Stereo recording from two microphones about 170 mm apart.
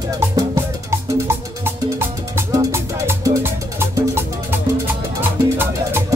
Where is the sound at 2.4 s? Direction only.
20° right (ahead or behind).